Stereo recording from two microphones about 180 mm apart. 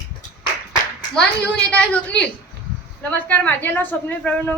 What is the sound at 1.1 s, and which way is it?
Speech, 5° left (ahead or behind).